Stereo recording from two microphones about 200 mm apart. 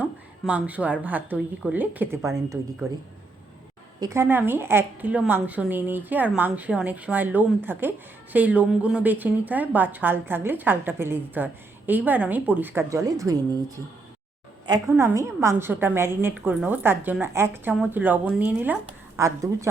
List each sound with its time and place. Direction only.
0.0 s a woman's voice: 5° right (ahead or behind)
4.0 s a woman's voice: 15° right (ahead or behind)